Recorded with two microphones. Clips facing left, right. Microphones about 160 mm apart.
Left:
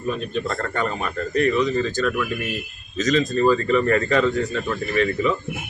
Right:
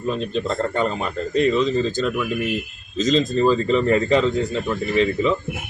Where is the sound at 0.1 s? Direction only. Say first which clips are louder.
Right 2 dB; 25° right (ahead or behind).